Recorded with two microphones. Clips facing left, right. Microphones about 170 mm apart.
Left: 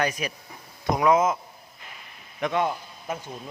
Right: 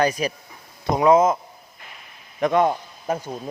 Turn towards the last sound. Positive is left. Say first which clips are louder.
# right 6 dB
turn(degrees=-45)  # may be behind; listen again after turning